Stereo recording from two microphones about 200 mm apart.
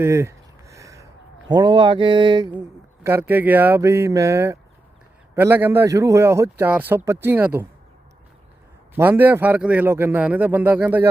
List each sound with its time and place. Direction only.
0.0 s a sound: 15° right (ahead or behind)
1.5 s speech: 20° right (ahead or behind)
3.0 s a man's voice: 10° right (ahead or behind)
9.0 s a man's voice: 10° right (ahead or behind)